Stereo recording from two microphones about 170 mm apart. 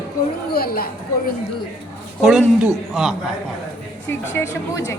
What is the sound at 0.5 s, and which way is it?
Speech, 65° left (ahead or behind).